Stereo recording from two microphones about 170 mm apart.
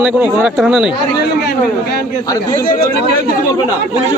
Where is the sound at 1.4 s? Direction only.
70° left (ahead or behind).